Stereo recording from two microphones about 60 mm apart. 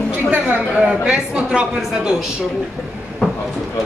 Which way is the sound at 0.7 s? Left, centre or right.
Centre.